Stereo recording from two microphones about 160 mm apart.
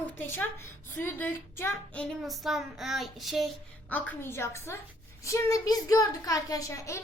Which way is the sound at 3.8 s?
10° left (ahead or behind).